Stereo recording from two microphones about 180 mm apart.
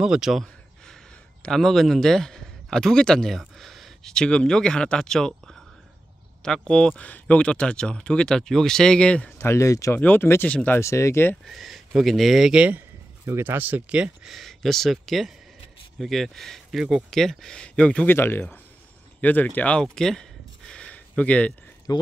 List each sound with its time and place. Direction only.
0.0 s a sound: 5° right (ahead or behind)
1.4 s speech: centre (ahead or behind)
11.4 s speech: centre (ahead or behind)
19.2 s a sound: 10° left (ahead or behind)
21.2 s speech: 5° left (ahead or behind)
21.9 s speech: 20° left (ahead or behind)